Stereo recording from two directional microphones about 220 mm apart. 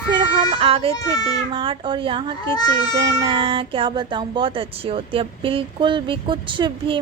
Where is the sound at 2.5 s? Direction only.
15° left (ahead or behind).